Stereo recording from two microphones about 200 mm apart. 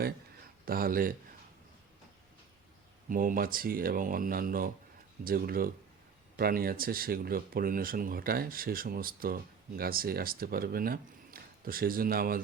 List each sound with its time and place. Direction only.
0.6 s speech: 45° right (ahead or behind)
3.1 s speech: 45° right (ahead or behind)